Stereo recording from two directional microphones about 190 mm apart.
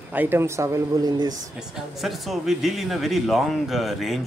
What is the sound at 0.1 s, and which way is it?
Speech, 10° right (ahead or behind).